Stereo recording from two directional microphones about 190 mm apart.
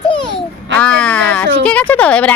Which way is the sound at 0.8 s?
5° left (ahead or behind).